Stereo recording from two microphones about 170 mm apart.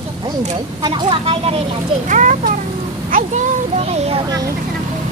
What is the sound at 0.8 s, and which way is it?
Speech, 25° right (ahead or behind).